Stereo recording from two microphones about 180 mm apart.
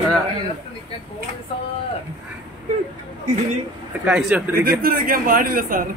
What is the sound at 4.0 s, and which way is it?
Speech, 5° right (ahead or behind).